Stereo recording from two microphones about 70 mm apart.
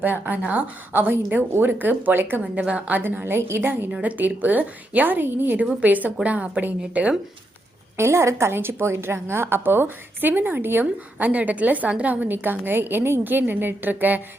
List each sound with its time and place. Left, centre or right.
0.0 s a woman's voice: right
2.4 s a woman's voice: centre
3.9 s a woman's voice: centre
7.9 s a woman's voice: right